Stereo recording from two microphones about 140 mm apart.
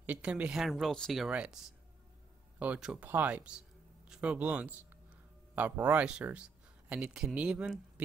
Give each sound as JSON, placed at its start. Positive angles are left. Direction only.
{"t": 0.0, "sound": "speech", "side_deg": -10}
{"t": 2.6, "sound": "speech", "side_deg": -10}